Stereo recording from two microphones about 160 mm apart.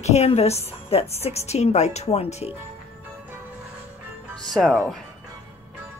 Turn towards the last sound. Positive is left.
turn(degrees=0)  # may be behind; listen again after turning